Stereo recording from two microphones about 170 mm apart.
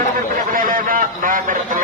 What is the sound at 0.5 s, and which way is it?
A man's voice, 55° right (ahead or behind).